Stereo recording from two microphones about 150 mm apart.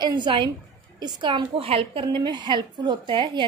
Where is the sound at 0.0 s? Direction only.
30° right (ahead or behind).